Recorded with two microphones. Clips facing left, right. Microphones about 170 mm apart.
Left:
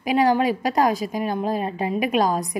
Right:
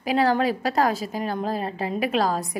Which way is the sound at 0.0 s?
15° left (ahead or behind).